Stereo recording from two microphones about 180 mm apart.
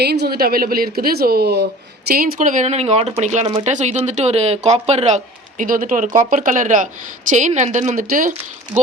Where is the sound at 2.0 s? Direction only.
55° right (ahead or behind).